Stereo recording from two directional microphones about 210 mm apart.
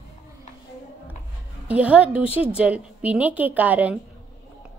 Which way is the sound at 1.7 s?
5° right (ahead or behind).